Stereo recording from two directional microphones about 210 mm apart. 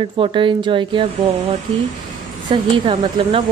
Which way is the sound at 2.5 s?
20° right (ahead or behind).